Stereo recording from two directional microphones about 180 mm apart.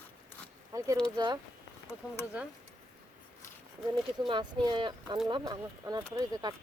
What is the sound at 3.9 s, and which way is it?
Speech, 25° right (ahead or behind).